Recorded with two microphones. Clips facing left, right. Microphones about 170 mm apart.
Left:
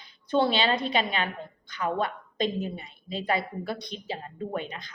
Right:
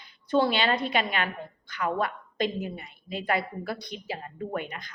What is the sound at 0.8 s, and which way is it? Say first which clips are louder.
A woman's voice: even; 25° left (ahead or behind).